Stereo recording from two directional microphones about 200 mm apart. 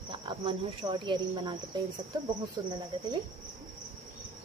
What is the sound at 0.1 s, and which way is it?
Speech, 25° right (ahead or behind).